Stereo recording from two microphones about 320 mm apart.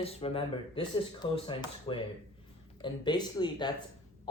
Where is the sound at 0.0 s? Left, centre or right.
Centre.